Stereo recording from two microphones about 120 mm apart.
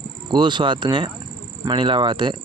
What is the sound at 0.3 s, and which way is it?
Speech, 40° right (ahead or behind).